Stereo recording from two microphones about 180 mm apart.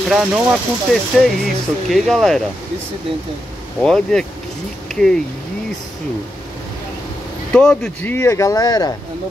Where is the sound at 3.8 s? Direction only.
5° left (ahead or behind).